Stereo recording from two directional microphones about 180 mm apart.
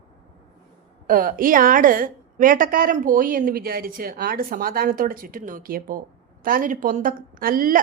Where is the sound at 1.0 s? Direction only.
50° right (ahead or behind).